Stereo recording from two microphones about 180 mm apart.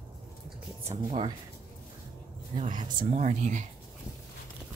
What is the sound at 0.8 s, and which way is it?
Speech, 35° right (ahead or behind).